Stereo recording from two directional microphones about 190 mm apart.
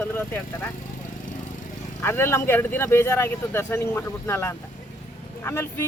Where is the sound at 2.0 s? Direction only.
10° left (ahead or behind).